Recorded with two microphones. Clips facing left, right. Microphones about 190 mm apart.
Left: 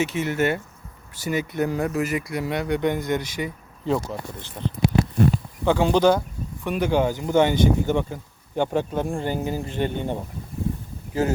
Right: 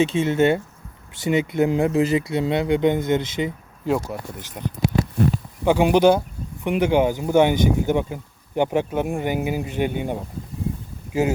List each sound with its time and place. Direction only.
0.0 s speech: 25° right (ahead or behind)
3.8 s speech: 10° right (ahead or behind)